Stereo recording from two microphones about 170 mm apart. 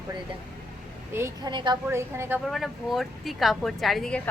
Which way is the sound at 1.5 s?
30° right (ahead or behind).